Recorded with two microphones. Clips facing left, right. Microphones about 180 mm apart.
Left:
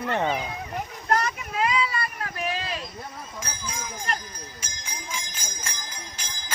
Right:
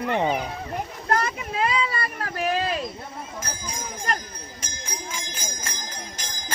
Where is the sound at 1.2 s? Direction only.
30° right (ahead or behind).